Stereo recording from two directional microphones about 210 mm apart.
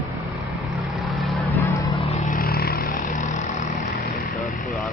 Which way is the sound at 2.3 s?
45° left (ahead or behind).